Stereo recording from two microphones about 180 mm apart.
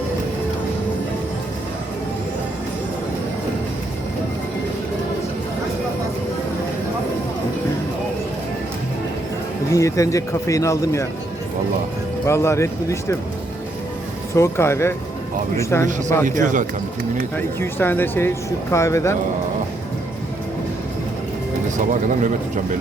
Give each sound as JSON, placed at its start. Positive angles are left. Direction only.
{"t": 9.7, "sound": "speech", "side_deg": 15}
{"t": 12.2, "sound": "speech", "side_deg": 15}
{"t": 14.3, "sound": "speech", "side_deg": 15}
{"t": 16.2, "sound": "speech", "side_deg": -45}
{"t": 17.6, "sound": "speech", "side_deg": 10}